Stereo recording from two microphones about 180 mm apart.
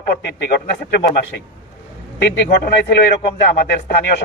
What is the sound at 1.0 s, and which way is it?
Speech, 60° left (ahead or behind).